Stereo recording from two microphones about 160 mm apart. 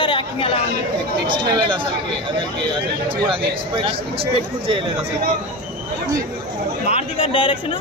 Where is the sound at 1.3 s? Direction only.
30° right (ahead or behind).